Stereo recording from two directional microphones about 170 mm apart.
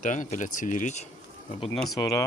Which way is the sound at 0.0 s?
50° left (ahead or behind).